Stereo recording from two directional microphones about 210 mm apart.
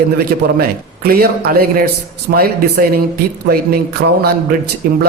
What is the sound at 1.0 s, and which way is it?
Speech, 45° right (ahead or behind).